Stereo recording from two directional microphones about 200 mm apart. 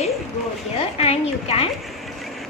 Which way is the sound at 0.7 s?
30° left (ahead or behind).